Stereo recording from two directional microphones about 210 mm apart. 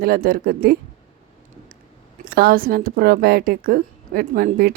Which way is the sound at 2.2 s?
45° right (ahead or behind).